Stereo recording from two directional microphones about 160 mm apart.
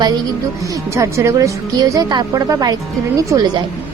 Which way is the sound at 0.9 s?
20° right (ahead or behind).